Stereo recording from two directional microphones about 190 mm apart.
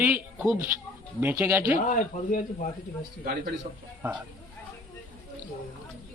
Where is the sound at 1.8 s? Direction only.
45° left (ahead or behind).